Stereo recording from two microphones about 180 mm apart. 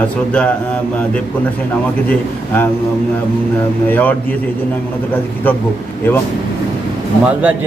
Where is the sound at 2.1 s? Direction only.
10° left (ahead or behind).